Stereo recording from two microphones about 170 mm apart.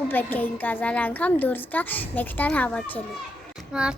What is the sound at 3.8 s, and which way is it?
Speech, 5° right (ahead or behind).